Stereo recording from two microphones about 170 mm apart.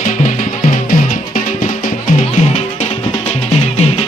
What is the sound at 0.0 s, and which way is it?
Music, 50° left (ahead or behind).